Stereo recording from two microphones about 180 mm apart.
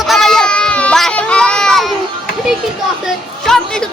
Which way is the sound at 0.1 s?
Centre (ahead or behind).